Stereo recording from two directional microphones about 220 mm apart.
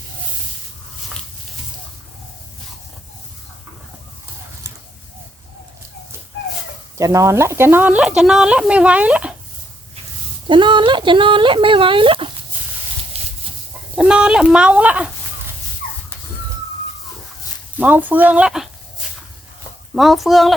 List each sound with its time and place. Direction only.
6.9 s speech: 15° right (ahead or behind)
10.5 s speech: 20° right (ahead or behind)
13.9 s speech: 5° right (ahead or behind)
17.7 s speech: 5° right (ahead or behind)
20.0 s speech: centre (ahead or behind)